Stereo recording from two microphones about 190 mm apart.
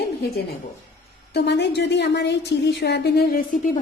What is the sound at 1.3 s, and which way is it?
A woman's voice, 65° left (ahead or behind).